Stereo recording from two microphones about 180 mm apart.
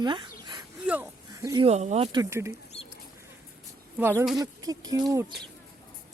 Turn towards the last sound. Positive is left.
turn(degrees=-20)  # may be behind; listen again after turning